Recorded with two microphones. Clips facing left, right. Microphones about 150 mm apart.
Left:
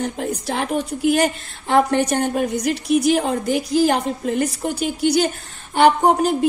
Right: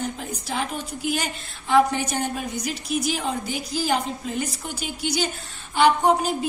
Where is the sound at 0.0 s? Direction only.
60° left (ahead or behind).